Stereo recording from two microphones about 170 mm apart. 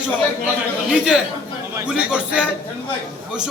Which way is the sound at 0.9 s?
5° right (ahead or behind).